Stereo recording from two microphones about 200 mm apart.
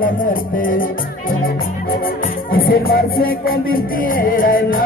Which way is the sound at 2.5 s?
50° left (ahead or behind).